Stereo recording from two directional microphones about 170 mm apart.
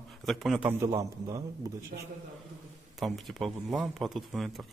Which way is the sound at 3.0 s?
Centre (ahead or behind).